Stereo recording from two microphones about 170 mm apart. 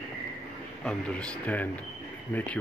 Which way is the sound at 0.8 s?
5° left (ahead or behind).